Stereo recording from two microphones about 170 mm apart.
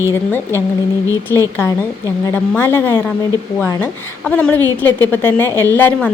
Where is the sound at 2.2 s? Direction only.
15° left (ahead or behind).